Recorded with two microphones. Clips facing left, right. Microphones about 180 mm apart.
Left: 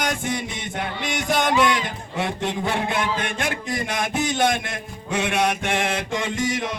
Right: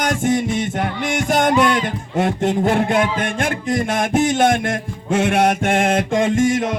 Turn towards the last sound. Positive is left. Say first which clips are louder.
# right 9 dB
turn(degrees=-50)  # may be behind; listen again after turning